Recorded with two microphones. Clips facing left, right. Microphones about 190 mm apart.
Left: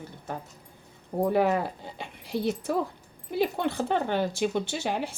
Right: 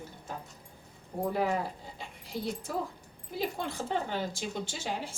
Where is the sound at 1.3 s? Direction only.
70° left (ahead or behind).